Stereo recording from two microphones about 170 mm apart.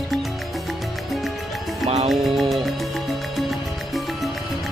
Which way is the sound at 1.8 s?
40° right (ahead or behind).